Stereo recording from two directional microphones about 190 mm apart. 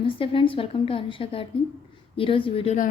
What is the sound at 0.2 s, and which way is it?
A woman's voice, 30° left (ahead or behind).